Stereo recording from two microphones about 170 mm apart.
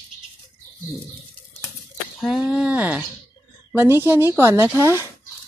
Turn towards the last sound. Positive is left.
turn(degrees=-15)  # may be behind; listen again after turning